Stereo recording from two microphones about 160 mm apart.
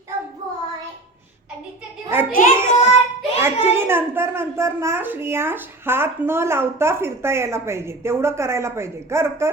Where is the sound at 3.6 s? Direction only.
15° right (ahead or behind).